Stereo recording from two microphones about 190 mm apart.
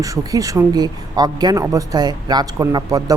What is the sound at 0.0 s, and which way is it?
Speech, 20° right (ahead or behind).